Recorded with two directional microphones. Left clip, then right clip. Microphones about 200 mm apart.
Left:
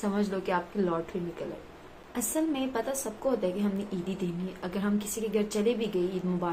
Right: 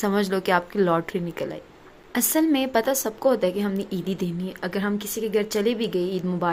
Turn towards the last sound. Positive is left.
turn(degrees=-40)  # may be behind; listen again after turning